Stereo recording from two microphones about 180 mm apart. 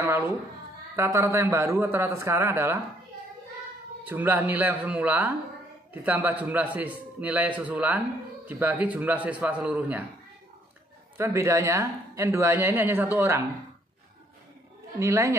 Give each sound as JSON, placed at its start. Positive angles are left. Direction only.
{"t": 0.0, "sound": "speech", "side_deg": -15}
{"t": 4.1, "sound": "speech", "side_deg": -10}
{"t": 11.1, "sound": "speech", "side_deg": -15}
{"t": 15.0, "sound": "speech", "side_deg": -15}